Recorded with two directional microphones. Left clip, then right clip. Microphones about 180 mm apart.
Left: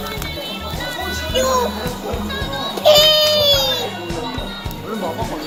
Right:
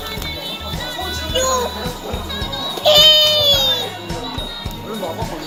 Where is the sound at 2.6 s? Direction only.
15° left (ahead or behind).